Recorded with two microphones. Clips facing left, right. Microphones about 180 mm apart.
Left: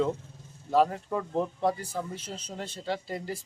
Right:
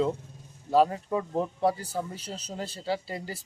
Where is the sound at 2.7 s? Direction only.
5° right (ahead or behind).